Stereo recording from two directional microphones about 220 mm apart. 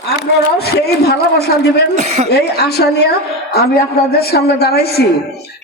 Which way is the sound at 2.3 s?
45° left (ahead or behind).